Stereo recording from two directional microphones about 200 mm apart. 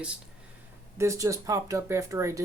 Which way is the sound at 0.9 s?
15° right (ahead or behind).